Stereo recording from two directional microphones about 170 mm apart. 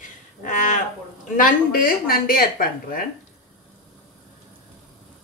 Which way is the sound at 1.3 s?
55° left (ahead or behind).